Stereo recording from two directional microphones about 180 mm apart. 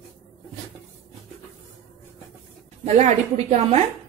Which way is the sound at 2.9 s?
35° right (ahead or behind).